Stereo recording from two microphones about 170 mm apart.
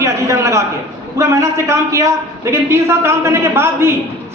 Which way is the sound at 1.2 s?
15° right (ahead or behind).